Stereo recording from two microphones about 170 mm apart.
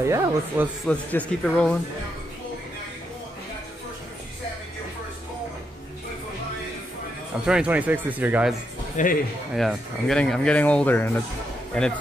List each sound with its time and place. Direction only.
0.0 s speech: 15° right (ahead or behind)
0.8 s speech: 5° left (ahead or behind)
7.4 s speech: 5° right (ahead or behind)
8.9 s speech: 55° left (ahead or behind)
9.6 s speech: centre (ahead or behind)